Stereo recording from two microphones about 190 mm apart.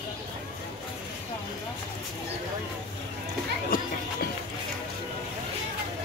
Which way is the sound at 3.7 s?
50° left (ahead or behind).